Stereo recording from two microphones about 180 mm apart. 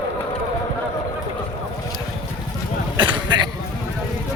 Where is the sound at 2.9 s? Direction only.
25° right (ahead or behind).